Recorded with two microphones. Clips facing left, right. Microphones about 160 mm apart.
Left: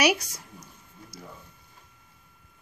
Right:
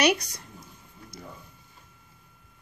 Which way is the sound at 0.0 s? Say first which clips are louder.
Right 1 dB; 10° left (ahead or behind).